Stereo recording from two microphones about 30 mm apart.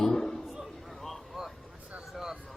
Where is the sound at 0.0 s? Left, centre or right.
Centre.